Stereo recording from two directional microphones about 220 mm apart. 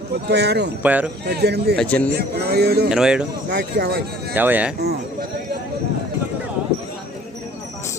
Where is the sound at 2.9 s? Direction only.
5° right (ahead or behind).